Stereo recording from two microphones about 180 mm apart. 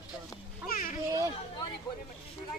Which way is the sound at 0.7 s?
50° left (ahead or behind).